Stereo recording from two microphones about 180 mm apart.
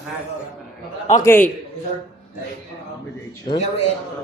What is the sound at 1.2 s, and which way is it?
Speech, 10° left (ahead or behind).